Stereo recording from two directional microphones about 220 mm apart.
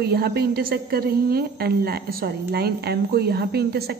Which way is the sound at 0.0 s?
45° right (ahead or behind).